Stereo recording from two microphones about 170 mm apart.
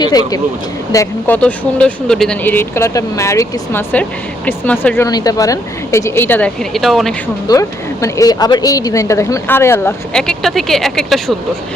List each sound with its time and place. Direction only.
0.0 s speech: 25° left (ahead or behind)
0.9 s speech: 10° left (ahead or behind)
5.0 s speech: 20° left (ahead or behind); by 7.2 s centre (ahead or behind)
7.4 s speech: 20° left (ahead or behind); by 11.3 s centre (ahead or behind)